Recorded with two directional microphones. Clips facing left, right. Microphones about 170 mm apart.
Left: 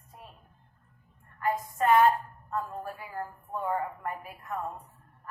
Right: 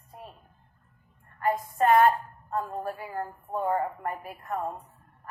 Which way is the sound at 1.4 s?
40° right (ahead or behind).